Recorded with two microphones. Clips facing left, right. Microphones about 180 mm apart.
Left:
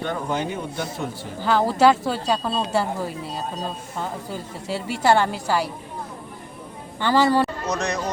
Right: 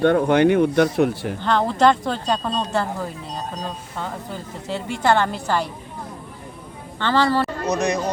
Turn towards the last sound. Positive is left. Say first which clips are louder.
# right 4 dB
turn(degrees=-15)  # may be behind; listen again after turning